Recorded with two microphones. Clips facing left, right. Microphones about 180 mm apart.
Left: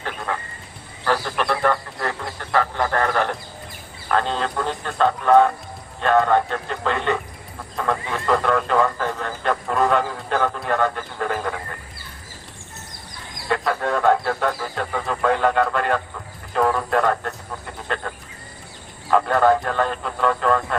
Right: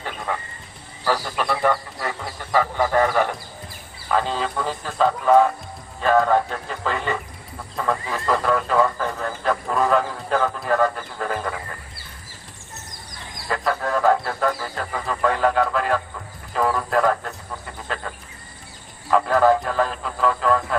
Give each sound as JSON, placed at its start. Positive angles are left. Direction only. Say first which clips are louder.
{"t": 1.0, "sound": "honk", "louder": "left 1 dB", "side_deg": -10}
{"t": 4.1, "sound": "speech", "louder": "left 1 dB", "side_deg": -5}
{"t": 13.5, "sound": "speech", "louder": "left 1 dB", "side_deg": 0}
{"t": 17.8, "sound": "a sound", "louder": "left 3 dB", "side_deg": 0}
{"t": 19.1, "sound": "speech", "louder": "even", "side_deg": 0}